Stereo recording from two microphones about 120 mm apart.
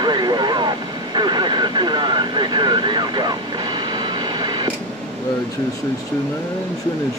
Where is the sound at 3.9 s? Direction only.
40° right (ahead or behind).